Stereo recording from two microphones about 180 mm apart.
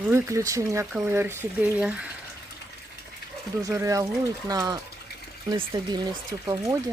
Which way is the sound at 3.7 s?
15° right (ahead or behind).